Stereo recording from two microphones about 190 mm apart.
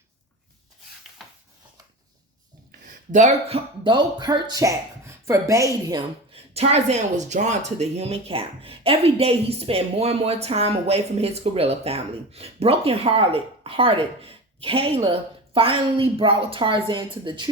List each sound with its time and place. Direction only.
1.2 s a sound: centre (ahead or behind)
3.1 s speech: 35° right (ahead or behind); by 6.0 s 15° right (ahead or behind)
6.0 s speech: 30° right (ahead or behind)